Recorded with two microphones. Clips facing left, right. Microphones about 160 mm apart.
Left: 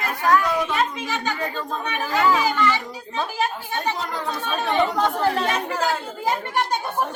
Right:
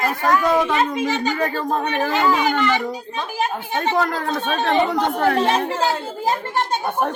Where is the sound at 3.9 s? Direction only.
65° right (ahead or behind).